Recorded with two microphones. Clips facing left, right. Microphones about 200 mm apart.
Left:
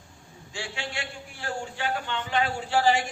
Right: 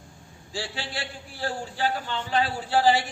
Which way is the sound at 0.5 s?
35° right (ahead or behind).